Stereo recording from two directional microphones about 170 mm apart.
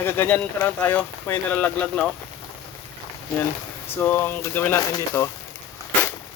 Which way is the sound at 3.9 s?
15° left (ahead or behind).